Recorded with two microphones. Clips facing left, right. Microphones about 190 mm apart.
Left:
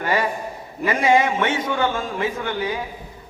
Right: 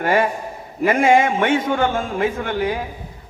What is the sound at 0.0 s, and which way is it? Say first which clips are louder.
A man's voice: right 4 dB; 50° right (ahead or behind).